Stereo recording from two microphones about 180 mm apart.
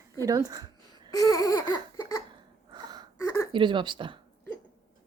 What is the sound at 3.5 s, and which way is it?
Speech, 25° right (ahead or behind).